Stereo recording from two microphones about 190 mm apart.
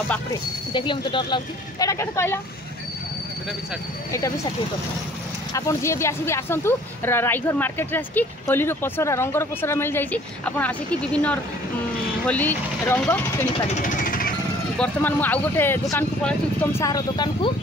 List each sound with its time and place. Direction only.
0.3 s speech: 25° left (ahead or behind)
5.5 s speech: 15° left (ahead or behind)
13.7 s vehicle: 45° left (ahead or behind)
14.8 s speech: 10° left (ahead or behind)
16.8 s speech: 20° left (ahead or behind)